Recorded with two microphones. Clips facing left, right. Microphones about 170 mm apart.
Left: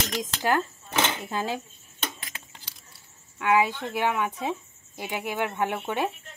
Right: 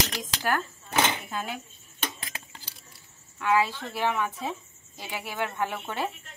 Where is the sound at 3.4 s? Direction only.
15° left (ahead or behind).